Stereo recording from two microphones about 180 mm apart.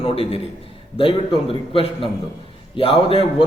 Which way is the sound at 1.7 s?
30° left (ahead or behind).